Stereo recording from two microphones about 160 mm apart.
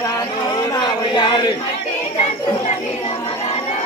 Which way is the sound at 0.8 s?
30° left (ahead or behind).